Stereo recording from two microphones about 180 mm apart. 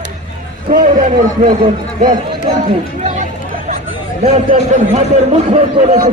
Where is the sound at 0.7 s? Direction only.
45° right (ahead or behind).